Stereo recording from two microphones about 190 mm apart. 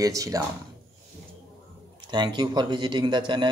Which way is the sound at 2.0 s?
25° right (ahead or behind).